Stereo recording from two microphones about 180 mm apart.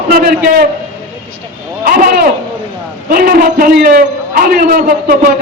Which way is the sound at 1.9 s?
55° right (ahead or behind).